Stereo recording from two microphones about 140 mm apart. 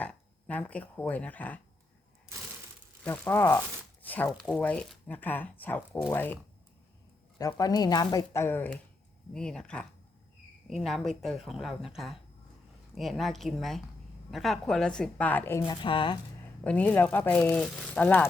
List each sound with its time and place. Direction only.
0.0 s speech: 10° left (ahead or behind)
3.0 s speech: 15° left (ahead or behind)
7.6 s a woman's voice: 25° left (ahead or behind)
15.6 s a woman's voice: 35° left (ahead or behind)
16.6 s speech: 10° left (ahead or behind)